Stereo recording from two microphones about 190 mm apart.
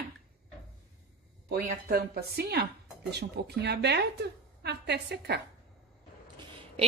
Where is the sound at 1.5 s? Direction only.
50° right (ahead or behind).